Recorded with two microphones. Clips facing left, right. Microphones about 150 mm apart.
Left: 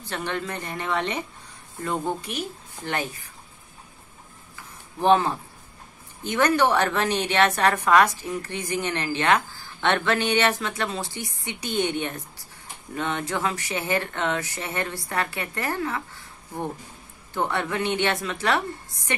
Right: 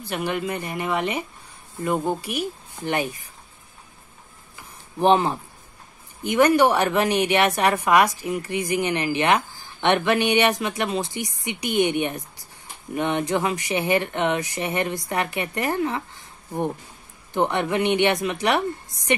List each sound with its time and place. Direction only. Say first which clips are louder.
0.0 s a woman's voice: right 4 dB; 10° right (ahead or behind)
5.0 s a woman's voice: right 1 dB; 15° right (ahead or behind)